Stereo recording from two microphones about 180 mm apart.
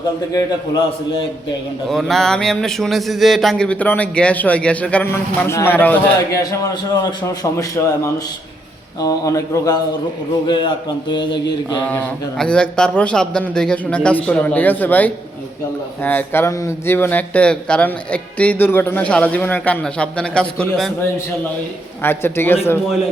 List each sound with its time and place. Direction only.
1.9 s speech: centre (ahead or behind); by 11.3 s 25° left (ahead or behind)
11.9 s speech: 10° left (ahead or behind)
22.0 s speech: 10° left (ahead or behind)